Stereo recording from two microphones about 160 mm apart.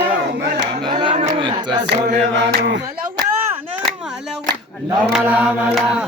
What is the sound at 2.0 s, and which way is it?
Mantra, 90° right.